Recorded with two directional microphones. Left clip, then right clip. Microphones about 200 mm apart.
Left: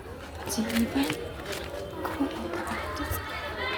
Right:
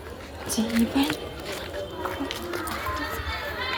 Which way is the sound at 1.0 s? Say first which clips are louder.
Right 4 dB; 10° right (ahead or behind).